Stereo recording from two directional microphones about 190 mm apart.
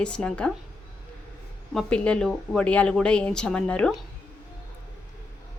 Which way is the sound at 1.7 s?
5° left (ahead or behind).